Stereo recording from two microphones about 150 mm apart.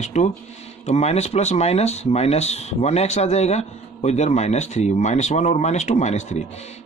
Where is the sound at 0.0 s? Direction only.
50° left (ahead or behind).